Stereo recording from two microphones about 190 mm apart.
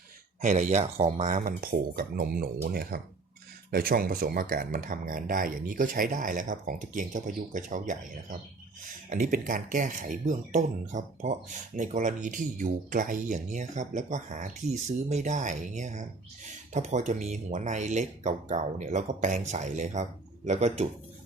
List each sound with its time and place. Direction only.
0.4 s speech: 40° right (ahead or behind)
9.0 s speech: 45° right (ahead or behind)